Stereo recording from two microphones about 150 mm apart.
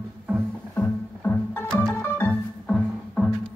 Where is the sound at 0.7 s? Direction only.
15° left (ahead or behind).